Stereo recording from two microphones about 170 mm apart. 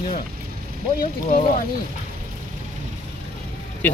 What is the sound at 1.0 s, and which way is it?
Speech, 55° left (ahead or behind).